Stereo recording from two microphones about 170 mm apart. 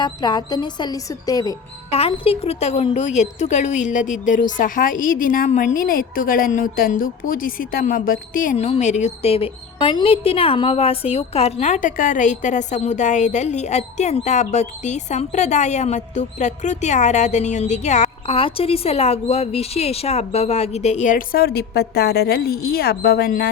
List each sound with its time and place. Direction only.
0.0 s a woman's voice: 25° left (ahead or behind)
1.9 s a woman's voice: 35° left (ahead or behind); by 8.6 s 50° left (ahead or behind)
8.6 s a woman's voice: 40° left (ahead or behind); by 23.5 s 65° left (ahead or behind)